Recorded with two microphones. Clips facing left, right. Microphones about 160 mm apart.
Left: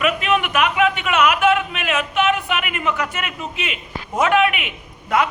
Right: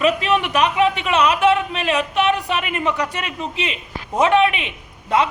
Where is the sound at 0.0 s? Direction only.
30° right (ahead or behind).